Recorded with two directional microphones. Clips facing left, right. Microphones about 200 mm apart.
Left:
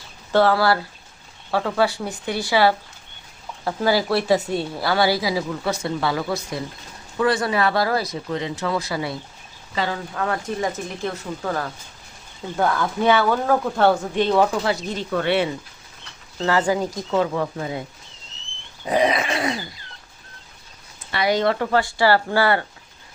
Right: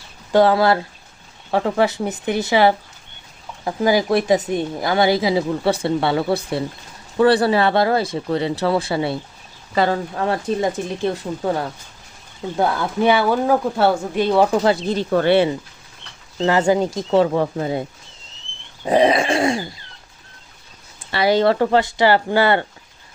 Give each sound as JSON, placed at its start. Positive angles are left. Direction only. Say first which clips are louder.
{"t": 0.3, "sound": "a woman's voice", "louder": "right 3 dB", "side_deg": -15}
{"t": 9.7, "sound": "speech", "louder": "right 7 dB", "side_deg": -45}
{"t": 10.2, "sound": "a woman's voice", "louder": "right 1 dB", "side_deg": -30}
{"t": 14.6, "sound": "a woman's voice", "louder": "right 6 dB", "side_deg": -30}
{"t": 18.9, "sound": "groan", "louder": "right 5 dB", "side_deg": -30}
{"t": 21.1, "sound": "a woman's voice", "louder": "right 4 dB", "side_deg": -30}